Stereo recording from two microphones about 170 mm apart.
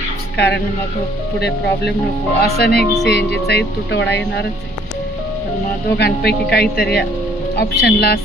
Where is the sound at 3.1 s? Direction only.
85° left.